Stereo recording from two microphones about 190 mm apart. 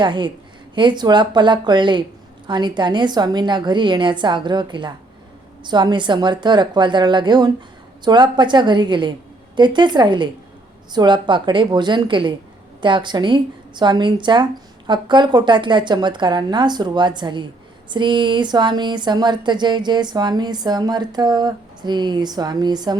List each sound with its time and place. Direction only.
0.0 s speech: 25° right (ahead or behind)